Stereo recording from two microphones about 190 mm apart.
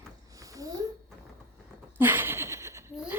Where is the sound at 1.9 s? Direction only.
10° right (ahead or behind).